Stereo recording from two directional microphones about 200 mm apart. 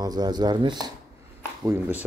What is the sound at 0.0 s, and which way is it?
Speech, 20° right (ahead or behind).